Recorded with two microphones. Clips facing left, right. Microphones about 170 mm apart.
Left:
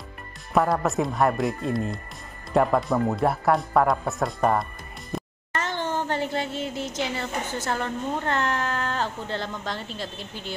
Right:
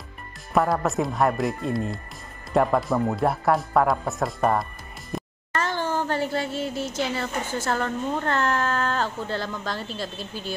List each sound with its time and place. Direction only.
0.5 s speech: centre (ahead or behind)
5.1 s music: centre (ahead or behind)
5.6 s speech: 20° left (ahead or behind)